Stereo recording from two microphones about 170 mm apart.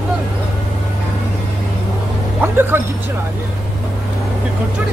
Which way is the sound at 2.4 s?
15° right (ahead or behind).